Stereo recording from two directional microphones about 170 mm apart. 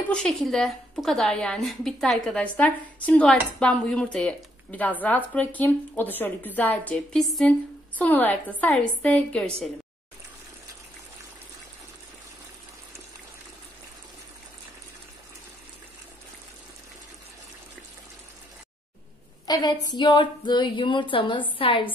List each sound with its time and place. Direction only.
0.1 s a woman's voice: 5° left (ahead or behind)
19.4 s a woman's voice: 25° left (ahead or behind)